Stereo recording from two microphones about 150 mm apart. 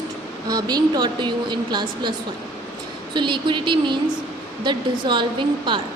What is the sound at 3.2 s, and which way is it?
A woman's voice, 30° right (ahead or behind).